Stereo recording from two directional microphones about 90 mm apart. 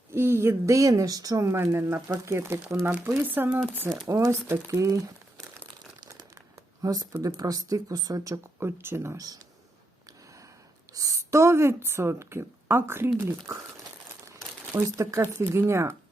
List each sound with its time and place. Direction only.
0.1 s a woman's voice: 30° right (ahead or behind)
4.0 s speech: 35° right (ahead or behind)
6.8 s speech: 40° right (ahead or behind)
8.5 s a woman's voice: 25° right (ahead or behind)
9.1 s speech: 45° right (ahead or behind)
10.9 s a woman's voice: 40° right (ahead or behind)
14.8 s speech: 35° right (ahead or behind)